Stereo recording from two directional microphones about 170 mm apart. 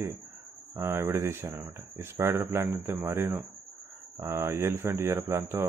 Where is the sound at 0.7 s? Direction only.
15° right (ahead or behind).